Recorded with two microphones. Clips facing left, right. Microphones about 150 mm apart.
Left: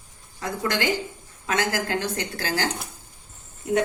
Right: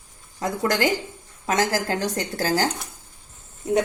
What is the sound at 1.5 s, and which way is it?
A woman's voice, 40° right (ahead or behind).